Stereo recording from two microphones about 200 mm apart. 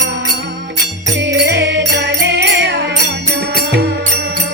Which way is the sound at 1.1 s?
60° right (ahead or behind).